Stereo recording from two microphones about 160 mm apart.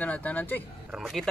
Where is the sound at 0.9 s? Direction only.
Centre (ahead or behind).